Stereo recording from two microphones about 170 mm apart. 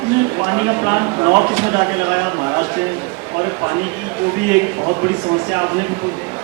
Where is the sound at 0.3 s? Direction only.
15° right (ahead or behind).